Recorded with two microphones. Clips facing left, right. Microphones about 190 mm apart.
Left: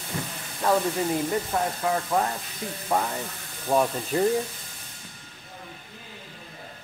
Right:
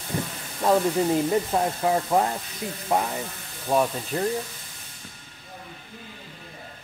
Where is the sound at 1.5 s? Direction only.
25° right (ahead or behind).